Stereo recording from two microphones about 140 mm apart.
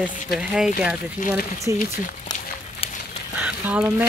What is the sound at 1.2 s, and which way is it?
Speech, 65° left (ahead or behind).